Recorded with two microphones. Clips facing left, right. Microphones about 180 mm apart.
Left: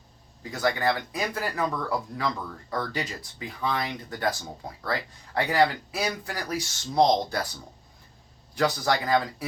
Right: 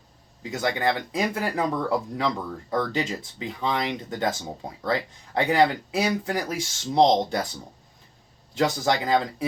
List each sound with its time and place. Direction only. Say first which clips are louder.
0.5 s speech: right 1 dB; 20° right (ahead or behind)
8.5 s speech: right 2 dB; 25° right (ahead or behind)